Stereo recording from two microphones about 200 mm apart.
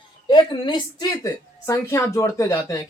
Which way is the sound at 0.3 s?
25° left (ahead or behind).